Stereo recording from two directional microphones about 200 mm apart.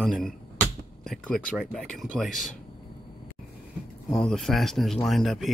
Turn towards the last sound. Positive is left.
turn(degrees=0)  # may be behind; listen again after turning